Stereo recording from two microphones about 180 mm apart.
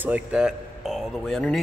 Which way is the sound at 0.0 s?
5° right (ahead or behind).